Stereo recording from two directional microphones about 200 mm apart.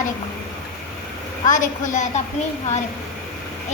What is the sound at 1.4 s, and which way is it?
Speech, 40° left (ahead or behind).